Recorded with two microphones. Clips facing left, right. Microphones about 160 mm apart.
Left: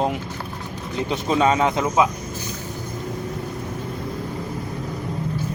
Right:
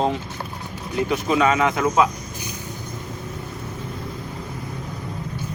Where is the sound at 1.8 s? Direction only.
10° left (ahead or behind).